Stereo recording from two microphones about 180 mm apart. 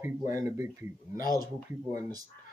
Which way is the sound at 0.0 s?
15° right (ahead or behind).